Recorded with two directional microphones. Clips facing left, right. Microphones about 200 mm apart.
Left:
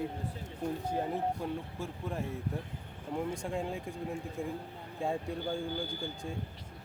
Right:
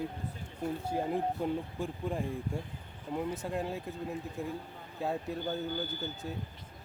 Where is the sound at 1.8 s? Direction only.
15° right (ahead or behind).